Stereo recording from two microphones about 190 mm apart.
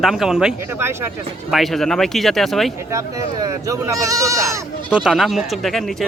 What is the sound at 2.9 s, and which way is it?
Speech, 15° right (ahead or behind).